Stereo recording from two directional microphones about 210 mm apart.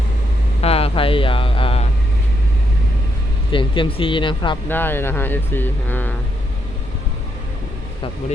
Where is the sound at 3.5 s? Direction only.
25° left (ahead or behind).